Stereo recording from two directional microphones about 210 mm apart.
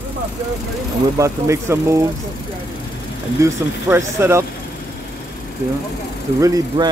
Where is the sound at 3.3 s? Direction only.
10° right (ahead or behind).